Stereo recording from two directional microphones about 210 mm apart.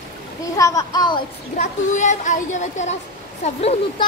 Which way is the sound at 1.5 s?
35° left (ahead or behind).